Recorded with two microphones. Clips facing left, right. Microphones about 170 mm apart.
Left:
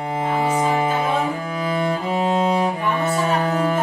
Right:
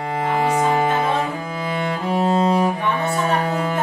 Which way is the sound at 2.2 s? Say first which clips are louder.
Right 2 dB; centre (ahead or behind).